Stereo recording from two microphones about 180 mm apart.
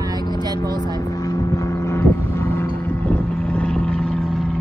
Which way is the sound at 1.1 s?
20° left (ahead or behind).